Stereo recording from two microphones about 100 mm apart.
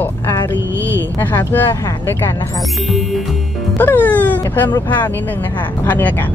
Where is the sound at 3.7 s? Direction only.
20° left (ahead or behind).